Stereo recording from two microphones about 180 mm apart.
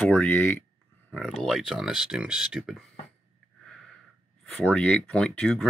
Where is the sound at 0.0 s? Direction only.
10° left (ahead or behind).